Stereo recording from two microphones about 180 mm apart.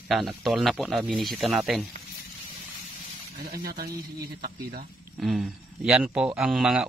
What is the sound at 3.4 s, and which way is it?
Speech, 60° right (ahead or behind).